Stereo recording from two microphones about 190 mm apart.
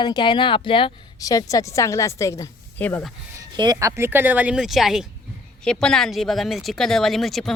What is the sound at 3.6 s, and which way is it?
Speech, 20° right (ahead or behind).